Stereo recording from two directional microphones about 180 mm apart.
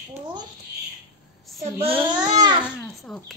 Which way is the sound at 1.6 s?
35° right (ahead or behind).